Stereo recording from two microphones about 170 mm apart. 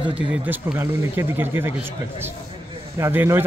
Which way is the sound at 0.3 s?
10° right (ahead or behind).